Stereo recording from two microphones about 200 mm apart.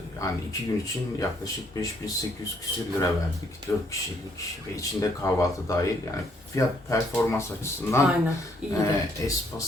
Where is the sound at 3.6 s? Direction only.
15° left (ahead or behind).